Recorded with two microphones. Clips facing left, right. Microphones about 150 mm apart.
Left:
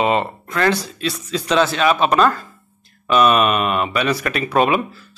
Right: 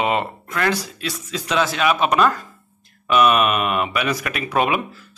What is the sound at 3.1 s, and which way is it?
Mantra, 30° left (ahead or behind).